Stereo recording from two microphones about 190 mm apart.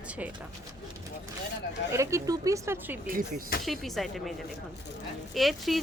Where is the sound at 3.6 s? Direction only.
Centre (ahead or behind).